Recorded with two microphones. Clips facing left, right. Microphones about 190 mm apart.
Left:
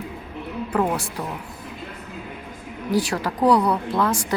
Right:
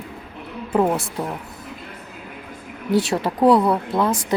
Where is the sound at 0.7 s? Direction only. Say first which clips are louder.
Right 4 dB; 25° right (ahead or behind).